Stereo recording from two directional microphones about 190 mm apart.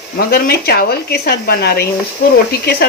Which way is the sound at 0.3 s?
55° left (ahead or behind).